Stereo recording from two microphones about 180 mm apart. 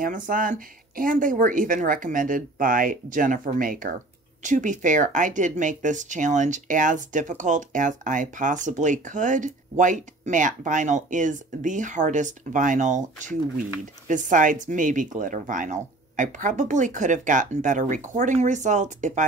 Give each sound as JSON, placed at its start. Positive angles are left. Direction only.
{"t": 0.0, "sound": "speech", "side_deg": -50}